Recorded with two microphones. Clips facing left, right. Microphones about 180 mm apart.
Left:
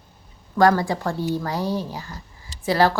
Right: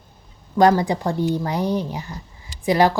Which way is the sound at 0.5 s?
20° right (ahead or behind).